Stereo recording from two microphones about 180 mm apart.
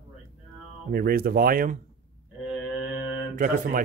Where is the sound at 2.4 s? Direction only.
5° right (ahead or behind).